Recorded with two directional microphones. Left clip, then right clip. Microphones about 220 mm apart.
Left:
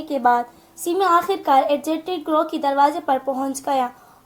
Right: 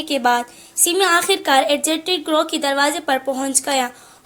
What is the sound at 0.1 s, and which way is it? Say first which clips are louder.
Speech: even; 50° right (ahead or behind).